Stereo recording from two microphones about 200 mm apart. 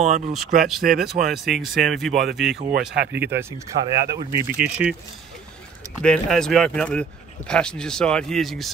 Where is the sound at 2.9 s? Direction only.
50° right (ahead or behind).